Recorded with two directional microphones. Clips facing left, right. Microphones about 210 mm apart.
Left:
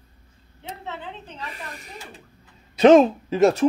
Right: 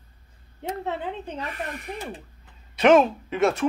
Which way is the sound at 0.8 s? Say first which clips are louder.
Right 3 dB; 55° right (ahead or behind).